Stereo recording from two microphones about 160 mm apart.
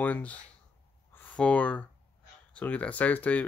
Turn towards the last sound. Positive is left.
turn(degrees=10)  # may be behind; listen again after turning